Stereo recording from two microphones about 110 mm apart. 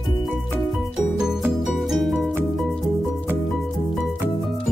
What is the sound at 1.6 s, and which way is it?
Music, centre (ahead or behind).